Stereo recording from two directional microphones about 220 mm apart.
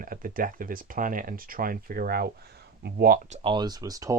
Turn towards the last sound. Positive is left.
turn(degrees=-15)  # may be behind; listen again after turning